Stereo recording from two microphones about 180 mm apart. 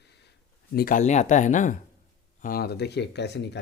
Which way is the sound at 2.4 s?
55° left (ahead or behind).